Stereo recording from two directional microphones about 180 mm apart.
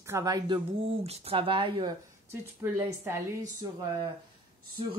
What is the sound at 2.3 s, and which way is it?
Speech, 15° right (ahead or behind).